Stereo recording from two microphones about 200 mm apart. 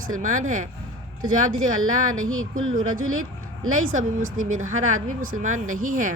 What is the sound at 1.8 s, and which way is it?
Speech, 90° right.